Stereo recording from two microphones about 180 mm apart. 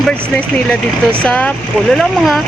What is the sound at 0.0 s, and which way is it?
Speech, 5° left (ahead or behind).